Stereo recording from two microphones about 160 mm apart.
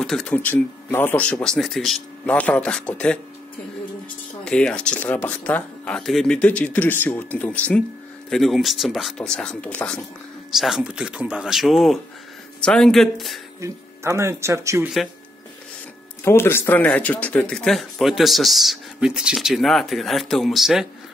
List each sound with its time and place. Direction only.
0.0 s speech: 5° left (ahead or behind)
4.5 s speech: 5° left (ahead or behind)
13.6 s speech: 15° right (ahead or behind)
16.3 s speech: 15° left (ahead or behind); by 20.8 s centre (ahead or behind)